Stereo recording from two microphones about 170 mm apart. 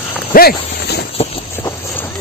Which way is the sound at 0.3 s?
65° left (ahead or behind).